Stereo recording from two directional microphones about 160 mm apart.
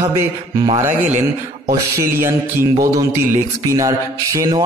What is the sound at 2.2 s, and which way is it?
A man's voice, 20° right (ahead or behind).